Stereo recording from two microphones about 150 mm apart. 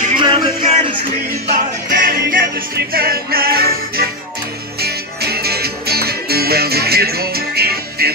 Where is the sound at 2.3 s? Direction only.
90° right.